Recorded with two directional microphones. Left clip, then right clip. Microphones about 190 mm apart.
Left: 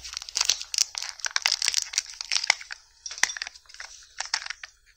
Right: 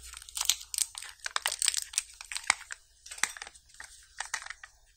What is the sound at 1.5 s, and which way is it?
Computer keyboard, 20° left (ahead or behind).